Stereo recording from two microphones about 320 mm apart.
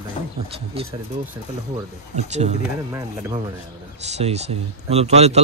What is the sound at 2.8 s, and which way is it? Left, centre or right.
Speech, centre.